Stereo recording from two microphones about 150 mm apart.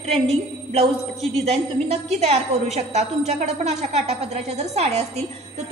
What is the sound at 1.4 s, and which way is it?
A woman's voice, 45° right (ahead or behind).